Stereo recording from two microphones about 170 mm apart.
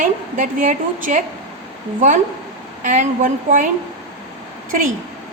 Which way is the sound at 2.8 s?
50° right (ahead or behind).